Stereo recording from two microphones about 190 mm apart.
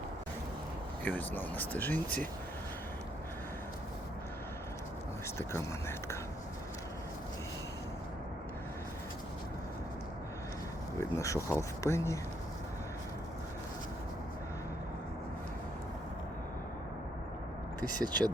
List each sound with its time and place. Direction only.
1.0 s speech: 10° left (ahead or behind)
5.4 s speech: 15° left (ahead or behind)
11.1 s speech: 15° left (ahead or behind)
18.0 s speech: 20° right (ahead or behind)